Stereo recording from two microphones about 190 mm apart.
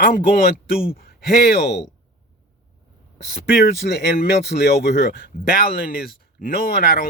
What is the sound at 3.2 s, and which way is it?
Speech, 55° left (ahead or behind).